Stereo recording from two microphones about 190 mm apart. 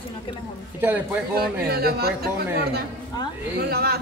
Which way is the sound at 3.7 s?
55° right (ahead or behind).